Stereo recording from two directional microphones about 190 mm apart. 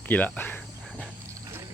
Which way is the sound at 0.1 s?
10° left (ahead or behind).